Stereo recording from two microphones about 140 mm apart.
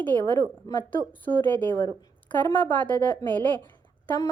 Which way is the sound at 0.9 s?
15° left (ahead or behind).